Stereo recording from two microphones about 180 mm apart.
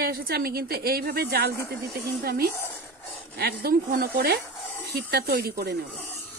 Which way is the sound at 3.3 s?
60° right (ahead or behind).